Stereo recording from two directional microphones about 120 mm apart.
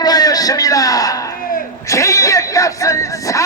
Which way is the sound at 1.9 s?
25° left (ahead or behind).